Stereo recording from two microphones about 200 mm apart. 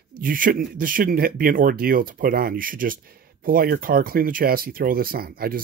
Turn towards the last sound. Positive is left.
turn(degrees=-50)  # may be behind; listen again after turning